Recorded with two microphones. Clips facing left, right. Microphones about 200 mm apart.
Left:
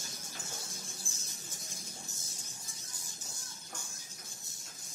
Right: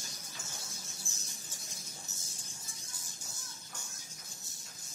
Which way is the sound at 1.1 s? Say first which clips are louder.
Left 1 dB; 55° left (ahead or behind).